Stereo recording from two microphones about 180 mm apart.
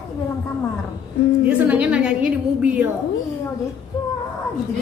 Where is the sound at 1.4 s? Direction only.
10° right (ahead or behind).